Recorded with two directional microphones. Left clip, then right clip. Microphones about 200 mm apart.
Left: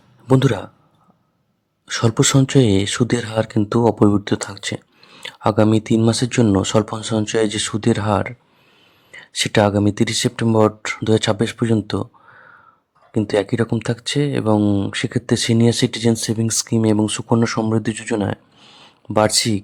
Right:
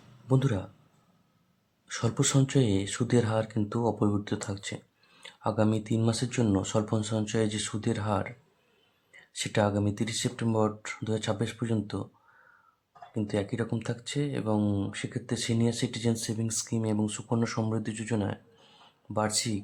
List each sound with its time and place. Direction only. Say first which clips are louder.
0.3 s speech: left 13 dB; 40° left (ahead or behind)
1.9 s speech: left 12 dB; 40° left (ahead or behind)